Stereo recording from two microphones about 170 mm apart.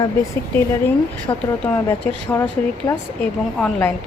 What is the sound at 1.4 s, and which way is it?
Speech, 10° left (ahead or behind).